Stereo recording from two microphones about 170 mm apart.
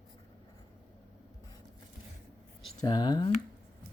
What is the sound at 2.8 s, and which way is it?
Speech, 25° left (ahead or behind).